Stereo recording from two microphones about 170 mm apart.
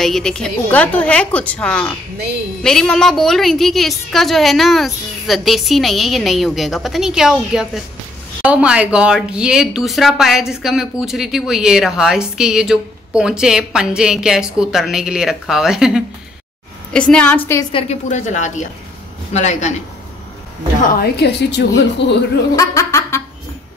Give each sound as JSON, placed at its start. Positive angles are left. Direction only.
{"t": 0.0, "sound": "a woman's voice", "side_deg": 5}
{"t": 17.7, "sound": "a woman's voice", "side_deg": 40}
{"t": 21.0, "sound": "a woman's voice", "side_deg": 75}
{"t": 22.6, "sound": "a woman's voice", "side_deg": 20}